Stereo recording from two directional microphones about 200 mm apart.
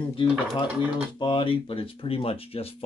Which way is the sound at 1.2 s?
25° left (ahead or behind).